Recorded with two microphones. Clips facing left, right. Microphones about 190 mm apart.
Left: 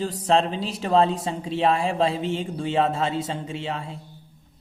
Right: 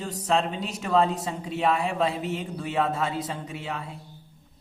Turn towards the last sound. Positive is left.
turn(degrees=25)  # may be behind; listen again after turning